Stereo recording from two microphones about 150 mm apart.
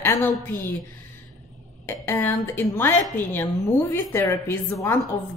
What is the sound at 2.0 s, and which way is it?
Speech, 15° left (ahead or behind).